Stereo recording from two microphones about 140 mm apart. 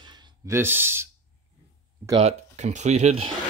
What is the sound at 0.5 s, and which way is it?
Speech, 15° right (ahead or behind).